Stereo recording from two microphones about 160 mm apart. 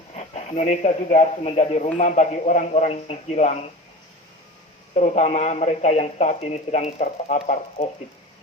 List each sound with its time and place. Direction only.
0.1 s speech: 45° left (ahead or behind)
4.9 s speech: 45° left (ahead or behind)